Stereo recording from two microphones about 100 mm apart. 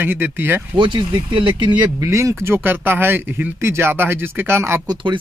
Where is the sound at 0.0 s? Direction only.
20° right (ahead or behind).